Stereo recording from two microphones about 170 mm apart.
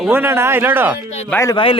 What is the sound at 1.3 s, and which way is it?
Speech, 15° left (ahead or behind).